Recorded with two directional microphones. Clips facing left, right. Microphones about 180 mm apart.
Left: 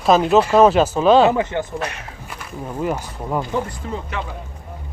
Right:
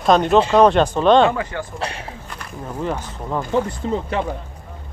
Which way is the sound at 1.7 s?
30° right (ahead or behind).